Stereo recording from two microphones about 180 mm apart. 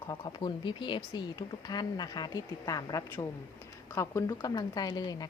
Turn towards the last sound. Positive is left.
turn(degrees=20)  # may be behind; listen again after turning